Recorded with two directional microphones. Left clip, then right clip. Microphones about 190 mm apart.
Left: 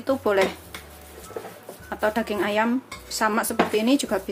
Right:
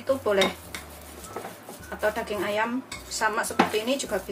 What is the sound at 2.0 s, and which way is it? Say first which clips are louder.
Speech: left 3 dB; 60° left (ahead or behind).